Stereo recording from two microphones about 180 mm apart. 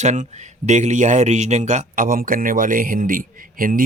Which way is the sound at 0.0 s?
40° right (ahead or behind).